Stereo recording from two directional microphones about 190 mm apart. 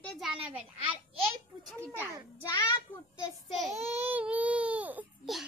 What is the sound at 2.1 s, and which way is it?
Speech, 15° right (ahead or behind).